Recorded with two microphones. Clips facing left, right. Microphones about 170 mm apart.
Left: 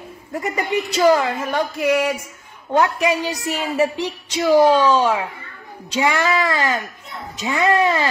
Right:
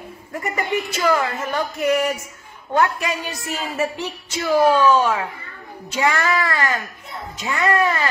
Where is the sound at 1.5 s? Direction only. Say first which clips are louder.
Left 1 dB; 10° left (ahead or behind).